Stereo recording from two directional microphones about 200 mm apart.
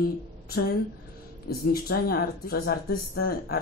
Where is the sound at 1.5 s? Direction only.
50° left (ahead or behind).